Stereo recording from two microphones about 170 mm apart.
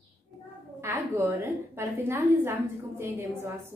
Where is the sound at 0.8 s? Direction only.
15° right (ahead or behind).